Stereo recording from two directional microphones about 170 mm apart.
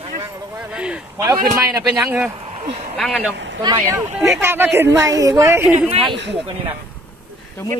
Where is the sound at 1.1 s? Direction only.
20° right (ahead or behind).